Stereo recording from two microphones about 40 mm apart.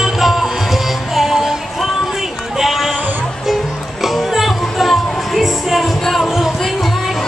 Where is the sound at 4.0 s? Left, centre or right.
Centre.